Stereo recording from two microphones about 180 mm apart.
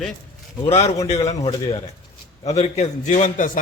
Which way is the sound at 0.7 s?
35° left (ahead or behind).